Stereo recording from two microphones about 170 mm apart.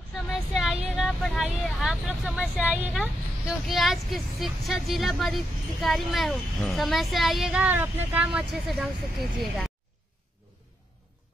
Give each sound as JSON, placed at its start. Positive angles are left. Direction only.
{"t": 0.1, "sound": "speech", "side_deg": 0}